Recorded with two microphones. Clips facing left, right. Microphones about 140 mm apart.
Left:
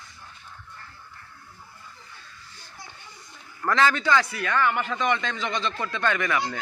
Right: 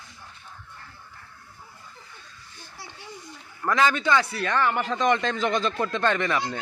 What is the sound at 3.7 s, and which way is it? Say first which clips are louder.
A man's voice: even; 15° right (ahead or behind).